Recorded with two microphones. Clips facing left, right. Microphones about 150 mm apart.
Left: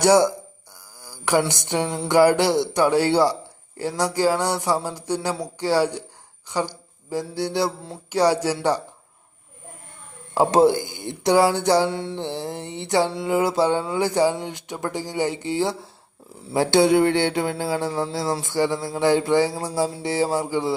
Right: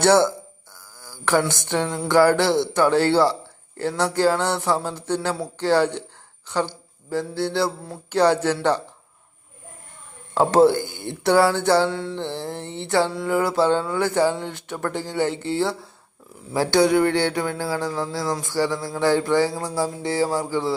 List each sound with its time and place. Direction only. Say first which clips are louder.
0.0 s speech: even; 15° left (ahead or behind)
10.3 s speech: right 1 dB; 15° left (ahead or behind)
16.5 s a sound: left 1 dB; 20° left (ahead or behind)